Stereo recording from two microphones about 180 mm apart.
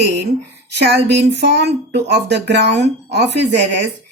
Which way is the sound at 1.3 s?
70° right (ahead or behind).